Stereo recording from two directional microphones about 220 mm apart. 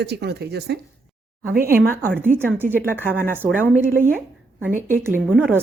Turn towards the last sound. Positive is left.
turn(degrees=-5)  # may be behind; listen again after turning